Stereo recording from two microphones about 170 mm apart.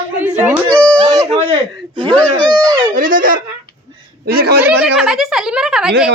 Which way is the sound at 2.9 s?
55° right (ahead or behind).